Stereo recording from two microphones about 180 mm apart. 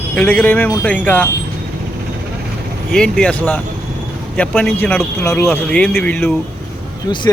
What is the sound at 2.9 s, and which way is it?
Speech, 5° left (ahead or behind).